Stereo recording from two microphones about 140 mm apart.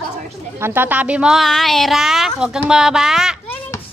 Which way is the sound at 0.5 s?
15° right (ahead or behind).